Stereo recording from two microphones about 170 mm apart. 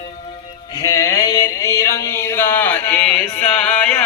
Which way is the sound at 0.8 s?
20° left (ahead or behind).